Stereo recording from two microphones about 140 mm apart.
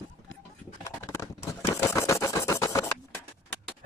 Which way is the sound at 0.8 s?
20° left (ahead or behind).